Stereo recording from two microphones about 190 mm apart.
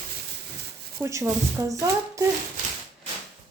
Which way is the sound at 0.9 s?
15° right (ahead or behind).